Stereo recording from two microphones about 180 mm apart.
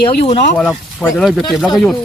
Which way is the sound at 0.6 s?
5° left (ahead or behind).